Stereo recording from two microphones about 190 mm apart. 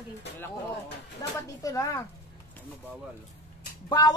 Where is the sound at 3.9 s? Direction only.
20° left (ahead or behind).